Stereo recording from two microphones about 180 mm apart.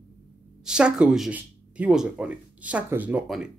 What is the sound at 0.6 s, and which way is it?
Speech, 5° right (ahead or behind).